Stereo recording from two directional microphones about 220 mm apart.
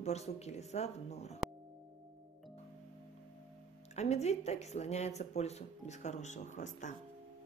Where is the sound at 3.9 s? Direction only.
30° left (ahead or behind).